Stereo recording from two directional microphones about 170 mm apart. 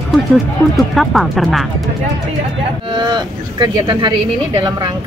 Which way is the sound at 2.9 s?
25° right (ahead or behind).